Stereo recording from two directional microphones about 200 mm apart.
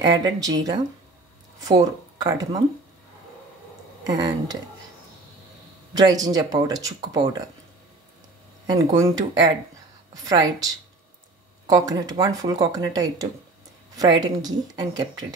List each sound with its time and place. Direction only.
0.0 s speech: 20° right (ahead or behind)
4.1 s speech: 20° right (ahead or behind)
5.9 s speech: 20° right (ahead or behind)
8.6 s speech: 15° right (ahead or behind)
10.2 s speech: 20° right (ahead or behind)
11.7 s speech: 20° right (ahead or behind)